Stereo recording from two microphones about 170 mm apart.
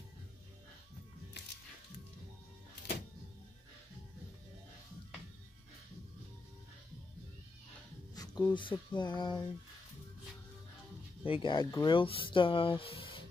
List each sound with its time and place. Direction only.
8.1 s speech: 20° left (ahead or behind)
11.2 s speech: 30° left (ahead or behind)